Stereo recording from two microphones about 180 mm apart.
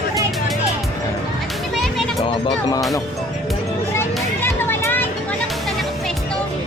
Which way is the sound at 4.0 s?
15° left (ahead or behind).